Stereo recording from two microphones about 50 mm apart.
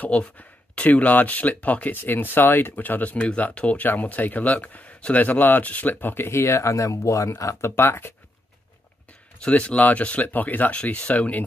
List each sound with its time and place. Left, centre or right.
0.0 s speech: left
2.0 s speech: left
7.7 s speech: left
9.5 s speech: left
10.8 s speech: left